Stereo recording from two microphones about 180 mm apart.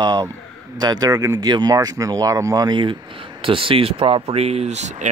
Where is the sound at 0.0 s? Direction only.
20° right (ahead or behind).